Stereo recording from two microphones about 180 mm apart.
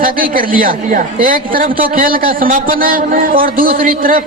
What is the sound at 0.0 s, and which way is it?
A man's voice, 50° right (ahead or behind).